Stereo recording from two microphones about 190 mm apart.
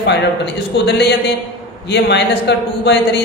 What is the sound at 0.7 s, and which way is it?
Speech, 60° left (ahead or behind).